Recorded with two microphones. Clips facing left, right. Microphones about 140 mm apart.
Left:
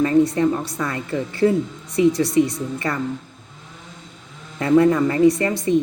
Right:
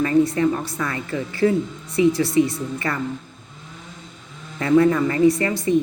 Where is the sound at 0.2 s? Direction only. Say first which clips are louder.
Left 1 dB; 5° right (ahead or behind).